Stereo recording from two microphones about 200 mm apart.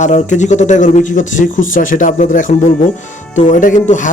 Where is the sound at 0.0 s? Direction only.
35° left (ahead or behind).